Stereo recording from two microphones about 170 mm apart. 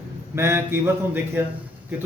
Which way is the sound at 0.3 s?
15° right (ahead or behind).